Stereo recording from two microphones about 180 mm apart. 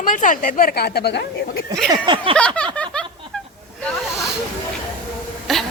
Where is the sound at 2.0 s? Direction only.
30° right (ahead or behind).